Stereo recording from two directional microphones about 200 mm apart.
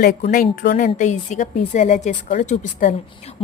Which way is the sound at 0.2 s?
40° left (ahead or behind).